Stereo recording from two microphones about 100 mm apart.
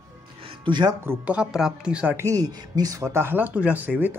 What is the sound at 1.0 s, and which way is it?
Speech, 15° right (ahead or behind).